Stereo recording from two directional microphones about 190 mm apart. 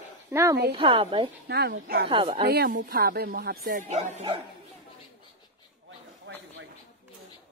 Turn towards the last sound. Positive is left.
turn(degrees=-75)  # may be behind; listen again after turning